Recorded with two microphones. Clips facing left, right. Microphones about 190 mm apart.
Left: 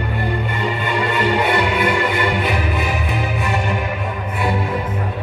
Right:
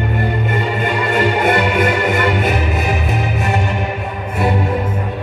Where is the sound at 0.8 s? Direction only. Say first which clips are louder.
Right 2 dB; 50° right (ahead or behind).